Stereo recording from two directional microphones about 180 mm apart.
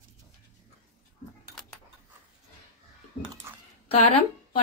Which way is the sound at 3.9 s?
35° left (ahead or behind).